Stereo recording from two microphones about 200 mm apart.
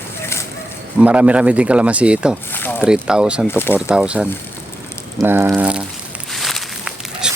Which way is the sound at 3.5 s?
10° left (ahead or behind).